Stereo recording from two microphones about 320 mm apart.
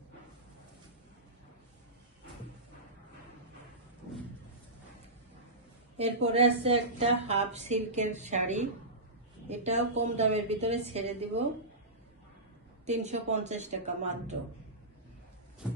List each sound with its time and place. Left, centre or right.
6.2 s a woman's voice: centre
12.8 s a woman's voice: right